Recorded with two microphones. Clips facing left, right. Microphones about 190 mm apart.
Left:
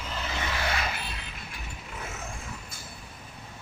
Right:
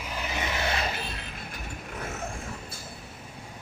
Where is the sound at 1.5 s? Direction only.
50° right (ahead or behind).